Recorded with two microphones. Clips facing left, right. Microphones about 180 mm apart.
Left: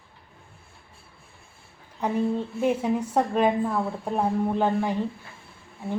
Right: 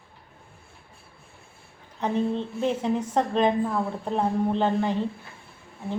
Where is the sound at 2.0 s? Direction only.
10° left (ahead or behind).